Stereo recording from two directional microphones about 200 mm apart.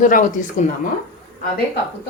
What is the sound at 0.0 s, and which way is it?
Speech, 40° left (ahead or behind).